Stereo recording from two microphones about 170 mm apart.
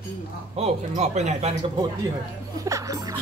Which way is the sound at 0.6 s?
40° right (ahead or behind).